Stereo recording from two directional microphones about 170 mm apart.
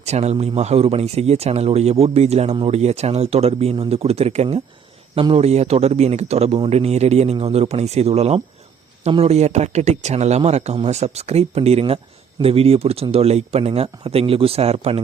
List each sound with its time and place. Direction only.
0.0 s speech: 40° right (ahead or behind)